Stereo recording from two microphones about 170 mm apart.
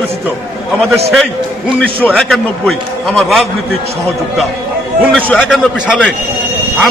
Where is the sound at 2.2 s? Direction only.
5° left (ahead or behind).